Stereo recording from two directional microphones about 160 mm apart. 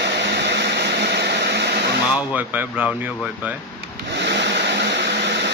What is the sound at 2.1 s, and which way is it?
Speech, 10° right (ahead or behind).